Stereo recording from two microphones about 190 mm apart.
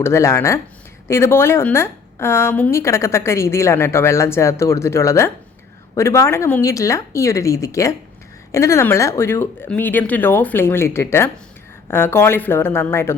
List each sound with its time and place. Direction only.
0.0 s a woman's voice: 15° left (ahead or behind)